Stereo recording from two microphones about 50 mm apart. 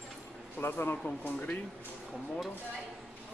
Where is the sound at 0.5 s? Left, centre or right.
Left.